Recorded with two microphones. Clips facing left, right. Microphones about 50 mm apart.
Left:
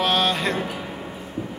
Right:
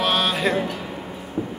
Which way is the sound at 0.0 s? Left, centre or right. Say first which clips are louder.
Even; centre.